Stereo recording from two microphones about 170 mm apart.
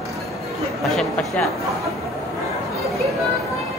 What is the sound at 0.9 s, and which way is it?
Speech, centre (ahead or behind).